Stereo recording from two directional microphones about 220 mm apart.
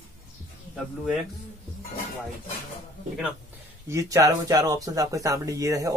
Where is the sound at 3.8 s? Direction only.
15° right (ahead or behind).